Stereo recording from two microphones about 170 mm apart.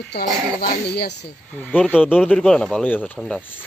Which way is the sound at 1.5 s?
5° left (ahead or behind).